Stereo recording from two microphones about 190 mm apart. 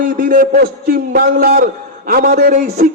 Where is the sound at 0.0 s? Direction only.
45° right (ahead or behind).